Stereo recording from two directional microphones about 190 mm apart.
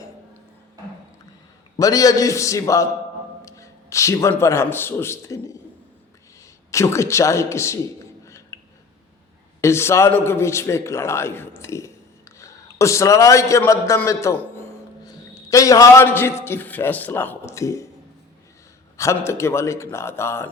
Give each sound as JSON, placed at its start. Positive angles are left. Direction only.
{"t": 1.8, "sound": "a man's voice", "side_deg": 20}
{"t": 6.7, "sound": "a man's voice", "side_deg": 15}
{"t": 8.2, "sound": "a sound", "side_deg": 15}
{"t": 9.6, "sound": "a man's voice", "side_deg": 15}
{"t": 18.9, "sound": "a man's voice", "side_deg": 15}